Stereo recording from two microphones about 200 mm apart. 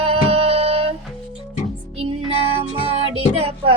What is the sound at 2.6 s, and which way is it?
Music, 30° right (ahead or behind).